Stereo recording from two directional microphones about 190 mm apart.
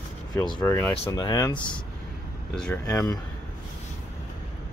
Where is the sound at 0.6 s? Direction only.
10° left (ahead or behind).